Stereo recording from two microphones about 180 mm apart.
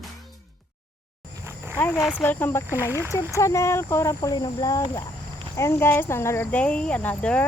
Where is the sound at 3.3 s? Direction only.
15° left (ahead or behind).